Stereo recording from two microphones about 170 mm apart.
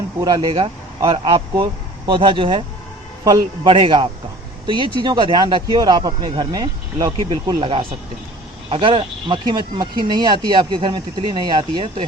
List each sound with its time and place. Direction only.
0.2 s speech: 20° right (ahead or behind)
0.5 s speech: 30° right (ahead or behind)